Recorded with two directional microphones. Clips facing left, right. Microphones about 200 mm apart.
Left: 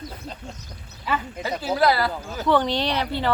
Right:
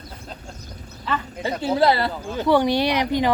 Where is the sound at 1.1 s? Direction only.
10° left (ahead or behind).